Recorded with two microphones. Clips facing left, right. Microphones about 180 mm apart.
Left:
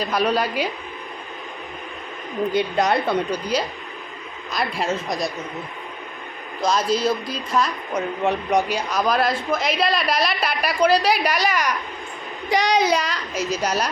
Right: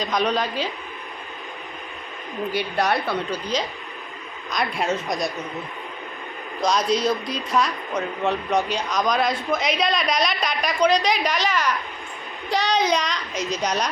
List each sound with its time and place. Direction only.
0.0 s speech: 5° left (ahead or behind)
2.7 s a woman's voice: 20° left (ahead or behind)
4.5 s speech: centre (ahead or behind)
6.6 s speech: 5° left (ahead or behind)
8.2 s speech: 15° left (ahead or behind)